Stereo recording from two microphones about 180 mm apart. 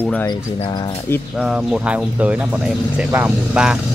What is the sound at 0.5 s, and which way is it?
Speech, 25° left (ahead or behind).